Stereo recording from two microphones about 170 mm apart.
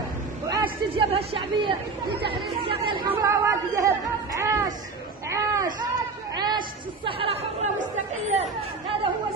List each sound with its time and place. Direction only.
0.5 s a sound: 20° right (ahead or behind)
1.1 s speech: 30° right (ahead or behind)
3.1 s speech: 20° right (ahead or behind)
5.3 s a sound: 20° right (ahead or behind)
6.3 s chatter: 25° right (ahead or behind)
7.1 s speech: 35° right (ahead or behind)
7.8 s chatter: 40° right (ahead or behind)